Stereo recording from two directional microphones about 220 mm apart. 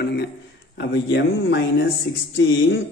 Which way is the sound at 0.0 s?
45° left (ahead or behind).